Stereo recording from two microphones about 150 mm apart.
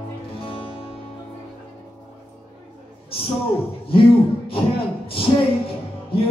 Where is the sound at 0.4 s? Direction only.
35° left (ahead or behind).